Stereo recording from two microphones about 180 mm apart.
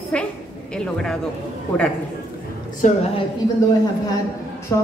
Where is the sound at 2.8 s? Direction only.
45° left (ahead or behind).